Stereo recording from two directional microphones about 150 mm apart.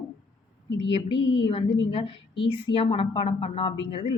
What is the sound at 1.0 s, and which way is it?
A woman's voice, 35° left (ahead or behind).